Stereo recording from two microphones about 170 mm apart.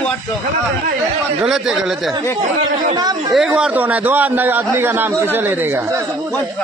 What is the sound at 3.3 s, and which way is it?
A man's voice, 5° right (ahead or behind).